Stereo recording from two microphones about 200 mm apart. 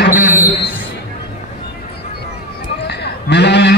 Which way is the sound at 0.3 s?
10° right (ahead or behind).